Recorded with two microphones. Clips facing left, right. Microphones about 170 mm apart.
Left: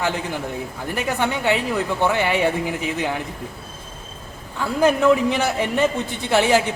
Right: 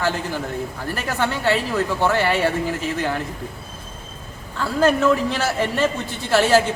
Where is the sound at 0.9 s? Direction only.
15° left (ahead or behind).